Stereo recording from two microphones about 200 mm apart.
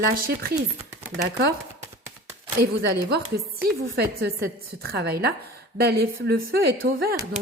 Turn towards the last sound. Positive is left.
turn(degrees=-50)  # may be behind; listen again after turning